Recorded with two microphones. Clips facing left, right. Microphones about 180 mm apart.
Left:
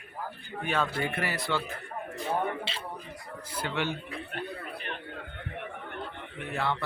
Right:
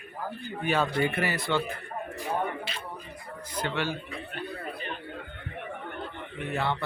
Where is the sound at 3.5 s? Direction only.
10° left (ahead or behind).